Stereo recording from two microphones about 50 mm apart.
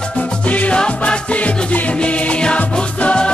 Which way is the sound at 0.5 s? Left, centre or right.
Left.